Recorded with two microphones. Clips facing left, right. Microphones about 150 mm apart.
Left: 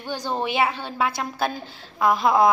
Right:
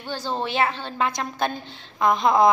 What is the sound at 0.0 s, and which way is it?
A woman's voice, 15° left (ahead or behind).